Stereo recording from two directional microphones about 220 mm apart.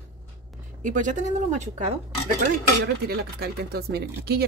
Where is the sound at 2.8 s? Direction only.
45° right (ahead or behind).